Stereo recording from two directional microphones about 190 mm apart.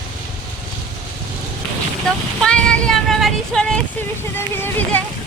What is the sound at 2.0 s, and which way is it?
Speech, 5° left (ahead or behind).